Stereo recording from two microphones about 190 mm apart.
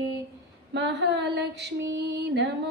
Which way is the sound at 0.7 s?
65° right (ahead or behind).